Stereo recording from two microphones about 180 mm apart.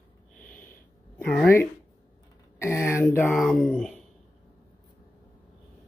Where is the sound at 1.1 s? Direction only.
5° left (ahead or behind).